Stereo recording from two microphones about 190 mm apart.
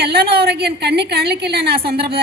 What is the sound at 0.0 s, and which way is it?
A woman's voice, 55° right (ahead or behind).